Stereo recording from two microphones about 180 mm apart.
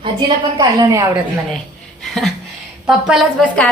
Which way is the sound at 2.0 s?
Centre (ahead or behind).